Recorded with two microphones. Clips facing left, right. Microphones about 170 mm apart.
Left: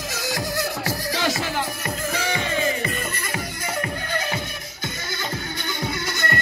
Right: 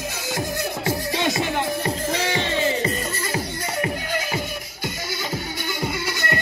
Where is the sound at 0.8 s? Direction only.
20° right (ahead or behind).